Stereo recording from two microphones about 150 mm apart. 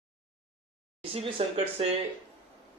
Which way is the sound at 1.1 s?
40° right (ahead or behind).